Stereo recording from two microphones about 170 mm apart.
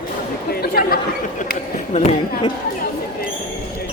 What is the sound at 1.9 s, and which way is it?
Speech, 40° left (ahead or behind).